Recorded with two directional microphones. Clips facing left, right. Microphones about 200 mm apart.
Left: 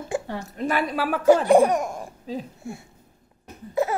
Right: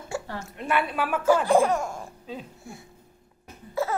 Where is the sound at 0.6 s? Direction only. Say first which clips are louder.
Left 2 dB; 40° left (ahead or behind).